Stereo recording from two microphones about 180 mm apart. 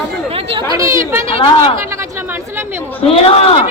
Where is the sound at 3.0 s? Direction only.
30° left (ahead or behind).